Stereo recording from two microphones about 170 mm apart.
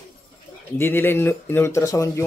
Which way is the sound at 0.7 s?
15° left (ahead or behind).